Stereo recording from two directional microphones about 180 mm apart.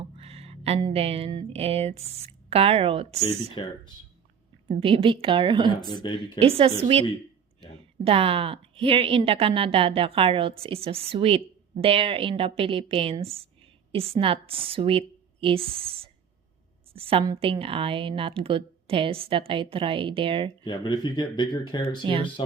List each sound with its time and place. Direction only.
0.0 s a sound: 35° right (ahead or behind)
0.8 s a woman's voice: 30° right (ahead or behind)
3.5 s speech: 25° left (ahead or behind)
4.8 s a woman's voice: 30° right (ahead or behind)
5.8 s speech: 25° left (ahead or behind)
6.4 s a woman's voice: 30° right (ahead or behind)
8.0 s a woman's voice: 30° right (ahead or behind)
20.7 s speech: 25° left (ahead or behind)